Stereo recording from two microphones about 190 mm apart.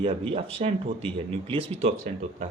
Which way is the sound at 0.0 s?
30° right (ahead or behind).